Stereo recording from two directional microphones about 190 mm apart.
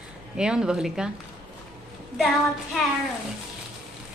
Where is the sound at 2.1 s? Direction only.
Centre (ahead or behind).